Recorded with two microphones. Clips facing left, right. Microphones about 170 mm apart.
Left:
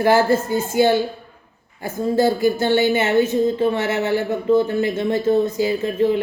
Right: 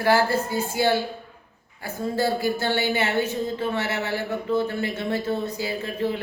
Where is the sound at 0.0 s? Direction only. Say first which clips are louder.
Left 5 dB; 20° left (ahead or behind).